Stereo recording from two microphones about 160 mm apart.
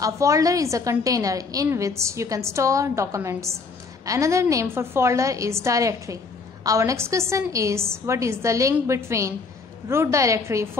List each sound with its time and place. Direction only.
0.0 s a woman's voice: 20° right (ahead or behind)